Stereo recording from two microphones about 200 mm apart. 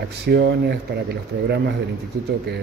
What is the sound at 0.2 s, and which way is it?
A man's voice, 55° right (ahead or behind).